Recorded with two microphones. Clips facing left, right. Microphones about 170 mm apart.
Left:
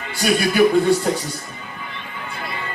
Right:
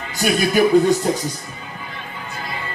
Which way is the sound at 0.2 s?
45° right (ahead or behind).